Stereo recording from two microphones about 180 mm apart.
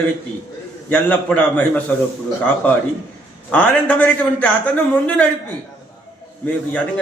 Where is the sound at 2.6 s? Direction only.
5° left (ahead or behind).